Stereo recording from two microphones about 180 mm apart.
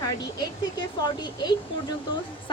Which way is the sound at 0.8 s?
25° left (ahead or behind).